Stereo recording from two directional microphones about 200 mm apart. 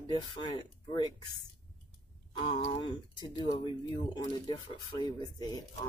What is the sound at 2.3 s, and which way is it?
Speech, 25° left (ahead or behind).